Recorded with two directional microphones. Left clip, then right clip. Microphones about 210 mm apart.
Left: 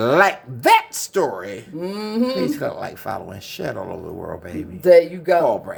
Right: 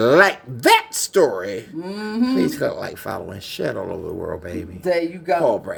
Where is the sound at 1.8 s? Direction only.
55° left (ahead or behind).